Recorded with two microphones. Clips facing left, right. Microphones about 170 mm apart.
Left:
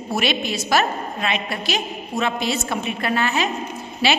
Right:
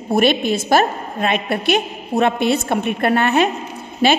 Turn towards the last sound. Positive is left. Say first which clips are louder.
# right 5 dB
turn(degrees=-50)  # may be behind; listen again after turning